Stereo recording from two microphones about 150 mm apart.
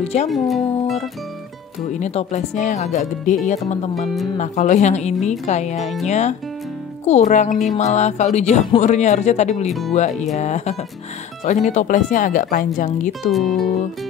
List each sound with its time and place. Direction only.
0.0 s speech: 45° left (ahead or behind)
0.3 s speech: centre (ahead or behind)
1.9 s speech: 50° left (ahead or behind)
9.7 s speech: centre (ahead or behind)
9.9 s speech: 50° left (ahead or behind)
13.3 s speech: centre (ahead or behind)